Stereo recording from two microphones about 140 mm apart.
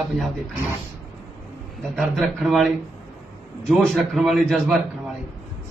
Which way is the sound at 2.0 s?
Centre (ahead or behind).